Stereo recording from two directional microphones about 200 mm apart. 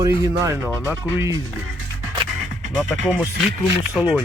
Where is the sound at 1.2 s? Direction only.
15° right (ahead or behind).